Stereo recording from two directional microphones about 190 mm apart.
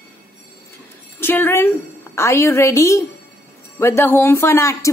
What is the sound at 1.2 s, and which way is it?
Speech, 10° left (ahead or behind).